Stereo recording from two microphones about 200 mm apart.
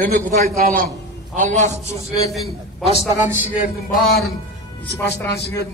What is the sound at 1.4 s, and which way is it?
Speech, 35° right (ahead or behind).